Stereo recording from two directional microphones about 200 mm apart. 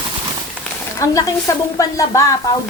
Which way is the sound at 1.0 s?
15° left (ahead or behind).